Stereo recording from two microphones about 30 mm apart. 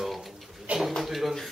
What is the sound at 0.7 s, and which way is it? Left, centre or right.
Speech, right.